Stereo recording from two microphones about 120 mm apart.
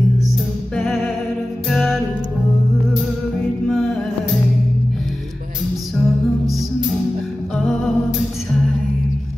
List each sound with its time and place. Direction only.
0.7 s music: centre (ahead or behind)
3.6 s music: 5° left (ahead or behind)
5.9 s music: centre (ahead or behind)
7.5 s music: centre (ahead or behind)